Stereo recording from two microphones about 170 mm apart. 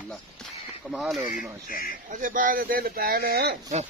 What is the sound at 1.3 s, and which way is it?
Speech, 55° left (ahead or behind).